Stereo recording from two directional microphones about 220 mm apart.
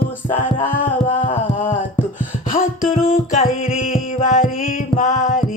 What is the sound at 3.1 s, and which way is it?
Music, 35° left (ahead or behind).